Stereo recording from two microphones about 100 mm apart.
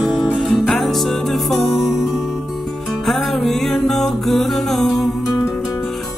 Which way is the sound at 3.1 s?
Centre (ahead or behind).